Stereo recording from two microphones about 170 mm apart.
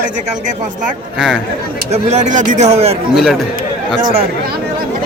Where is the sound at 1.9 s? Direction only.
40° right (ahead or behind).